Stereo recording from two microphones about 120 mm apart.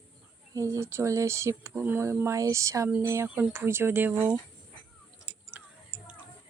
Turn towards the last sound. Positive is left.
turn(degrees=-15)  # may be behind; listen again after turning